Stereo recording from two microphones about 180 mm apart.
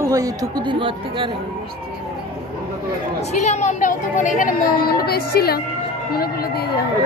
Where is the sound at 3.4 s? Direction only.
40° left (ahead or behind); by 5.5 s 60° left (ahead or behind).